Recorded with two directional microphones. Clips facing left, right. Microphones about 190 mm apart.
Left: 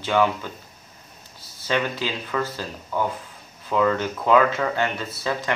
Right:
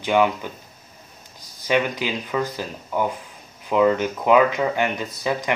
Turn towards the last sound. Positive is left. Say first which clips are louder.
# right 2 dB
turn(degrees=-15)  # may be behind; listen again after turning